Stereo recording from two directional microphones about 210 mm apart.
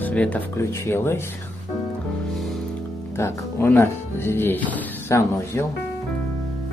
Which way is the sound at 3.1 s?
10° left (ahead or behind).